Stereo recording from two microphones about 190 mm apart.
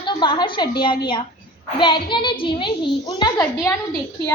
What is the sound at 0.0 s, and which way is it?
A child's voice, 25° left (ahead or behind).